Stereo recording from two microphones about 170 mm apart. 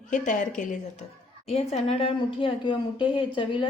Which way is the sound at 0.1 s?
50° left (ahead or behind).